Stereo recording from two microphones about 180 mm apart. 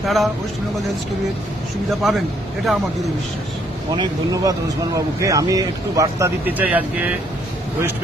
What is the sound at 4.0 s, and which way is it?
Speech, 20° right (ahead or behind).